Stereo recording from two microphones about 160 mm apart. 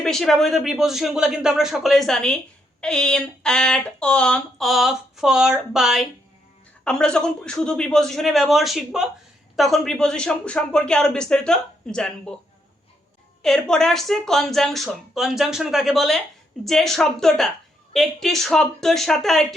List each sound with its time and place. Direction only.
0.0 s speech: centre (ahead or behind)
13.4 s speech: 5° left (ahead or behind)